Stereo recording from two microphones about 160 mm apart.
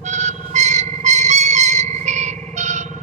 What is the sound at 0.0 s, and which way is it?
Music, 50° right (ahead or behind).